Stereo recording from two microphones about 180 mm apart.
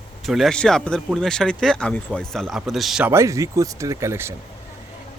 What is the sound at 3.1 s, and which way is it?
Speech, 15° right (ahead or behind).